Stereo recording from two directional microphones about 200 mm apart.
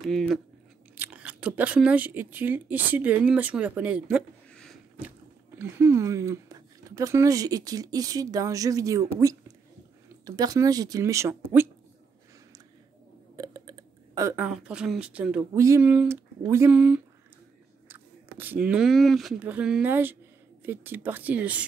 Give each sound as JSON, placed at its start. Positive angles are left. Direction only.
{"t": 0.0, "sound": "speech", "side_deg": 0}
{"t": 5.6, "sound": "speech", "side_deg": -15}
{"t": 10.2, "sound": "speech", "side_deg": -20}
{"t": 13.4, "sound": "speech", "side_deg": -20}